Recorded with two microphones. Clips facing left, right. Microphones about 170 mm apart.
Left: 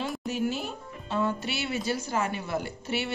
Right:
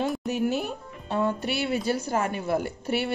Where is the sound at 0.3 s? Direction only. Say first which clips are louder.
Right 4 dB; 55° right (ahead or behind).